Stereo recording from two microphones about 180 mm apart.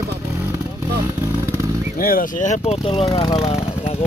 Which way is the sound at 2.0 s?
50° left (ahead or behind).